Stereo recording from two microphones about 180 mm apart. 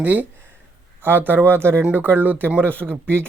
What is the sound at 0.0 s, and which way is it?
Speech, 10° right (ahead or behind).